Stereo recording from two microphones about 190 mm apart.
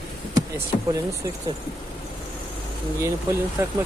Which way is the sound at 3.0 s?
15° right (ahead or behind).